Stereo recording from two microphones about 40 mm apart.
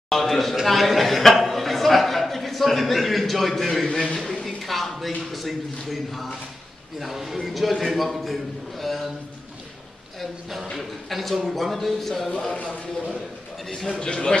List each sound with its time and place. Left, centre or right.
0.1 s a sound: centre
5.3 s speech: centre
10.8 s speech: centre
13.7 s a man's voice: centre
14.0 s speech: left